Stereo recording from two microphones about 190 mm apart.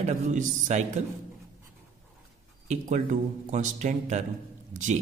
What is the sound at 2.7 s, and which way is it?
Speech, 40° right (ahead or behind).